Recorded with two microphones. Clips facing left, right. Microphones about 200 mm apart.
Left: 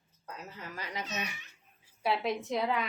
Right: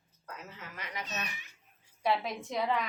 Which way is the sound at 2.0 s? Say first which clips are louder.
Left 1 dB; centre (ahead or behind).